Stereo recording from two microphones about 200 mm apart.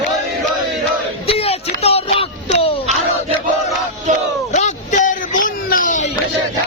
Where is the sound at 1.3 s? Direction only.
30° left (ahead or behind).